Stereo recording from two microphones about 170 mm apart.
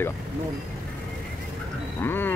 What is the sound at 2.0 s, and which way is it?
Speech, 10° left (ahead or behind).